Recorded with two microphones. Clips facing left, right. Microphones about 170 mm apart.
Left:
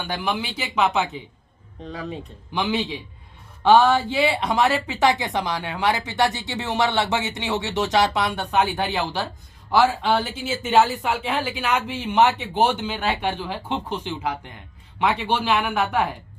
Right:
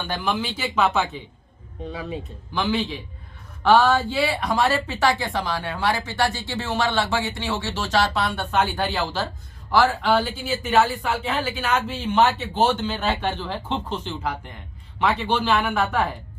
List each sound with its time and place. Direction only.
0.0 s speech: 10° left (ahead or behind)
1.8 s speech: 5° right (ahead or behind)
2.5 s speech: 15° left (ahead or behind)